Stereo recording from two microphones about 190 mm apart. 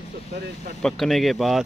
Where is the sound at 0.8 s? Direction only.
Centre (ahead or behind).